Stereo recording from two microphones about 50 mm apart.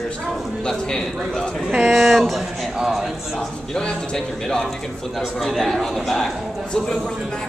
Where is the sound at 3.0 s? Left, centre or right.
Centre.